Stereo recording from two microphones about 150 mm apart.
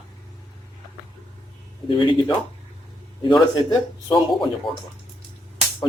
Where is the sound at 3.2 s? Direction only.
30° left (ahead or behind).